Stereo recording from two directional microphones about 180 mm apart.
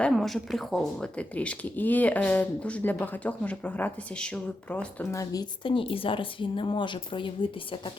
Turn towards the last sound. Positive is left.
turn(degrees=25)  # may be behind; listen again after turning